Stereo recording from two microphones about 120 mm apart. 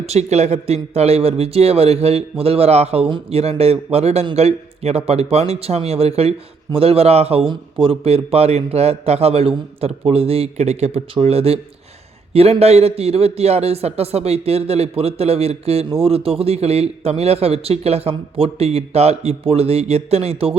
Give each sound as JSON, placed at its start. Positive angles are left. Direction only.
{"t": 0.0, "sound": "a man's voice", "side_deg": -65}